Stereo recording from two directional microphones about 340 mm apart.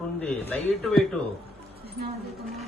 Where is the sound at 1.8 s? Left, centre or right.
Right.